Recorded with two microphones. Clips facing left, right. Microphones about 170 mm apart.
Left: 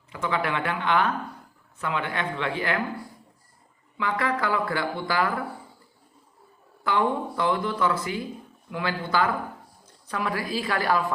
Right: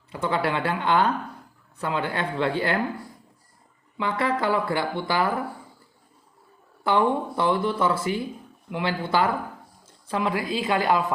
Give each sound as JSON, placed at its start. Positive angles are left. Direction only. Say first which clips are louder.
{"t": 0.1, "sound": "speech", "louder": "right 2 dB", "side_deg": -35}
{"t": 3.9, "sound": "speech", "louder": "right 2 dB", "side_deg": -25}
{"t": 6.8, "sound": "speech", "louder": "right 3 dB", "side_deg": -30}